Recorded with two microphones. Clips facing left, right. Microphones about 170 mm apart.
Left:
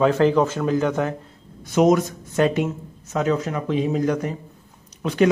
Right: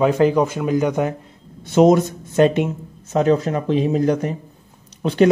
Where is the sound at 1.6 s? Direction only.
30° right (ahead or behind).